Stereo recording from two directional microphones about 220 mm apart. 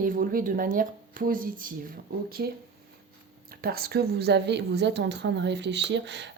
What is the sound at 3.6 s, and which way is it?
A woman's voice, 45° right (ahead or behind).